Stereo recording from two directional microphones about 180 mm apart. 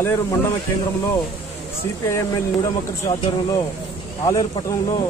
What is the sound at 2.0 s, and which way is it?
Speech, 15° left (ahead or behind).